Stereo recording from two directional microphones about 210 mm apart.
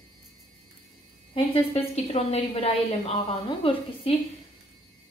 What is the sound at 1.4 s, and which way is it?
A woman's voice, 30° left (ahead or behind).